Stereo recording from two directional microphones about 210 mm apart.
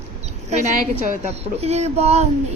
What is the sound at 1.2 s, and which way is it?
A woman's voice, 30° right (ahead or behind).